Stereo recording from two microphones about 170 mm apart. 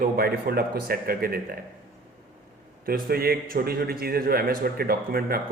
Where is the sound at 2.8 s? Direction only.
60° right (ahead or behind).